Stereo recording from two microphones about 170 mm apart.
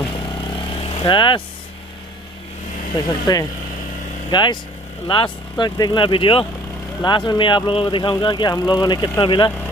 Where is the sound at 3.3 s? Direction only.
25° left (ahead or behind).